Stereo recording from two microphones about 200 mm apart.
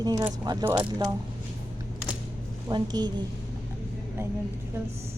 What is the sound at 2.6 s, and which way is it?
Speech, 20° right (ahead or behind).